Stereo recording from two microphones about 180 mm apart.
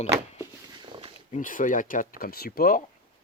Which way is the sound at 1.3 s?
45° left (ahead or behind).